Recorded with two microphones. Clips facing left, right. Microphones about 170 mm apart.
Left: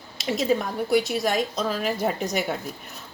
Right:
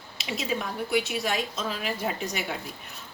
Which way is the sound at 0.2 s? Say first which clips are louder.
Left 7 dB; 40° left (ahead or behind).